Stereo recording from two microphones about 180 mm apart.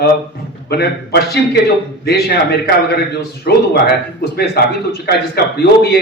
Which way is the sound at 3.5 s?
65° left (ahead or behind).